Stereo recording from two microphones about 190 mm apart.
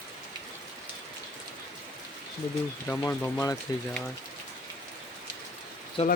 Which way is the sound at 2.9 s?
10° left (ahead or behind).